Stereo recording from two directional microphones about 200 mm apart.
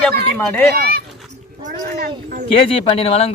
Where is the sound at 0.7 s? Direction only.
50° right (ahead or behind).